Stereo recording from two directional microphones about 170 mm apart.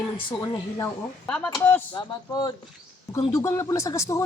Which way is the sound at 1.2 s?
5° left (ahead or behind).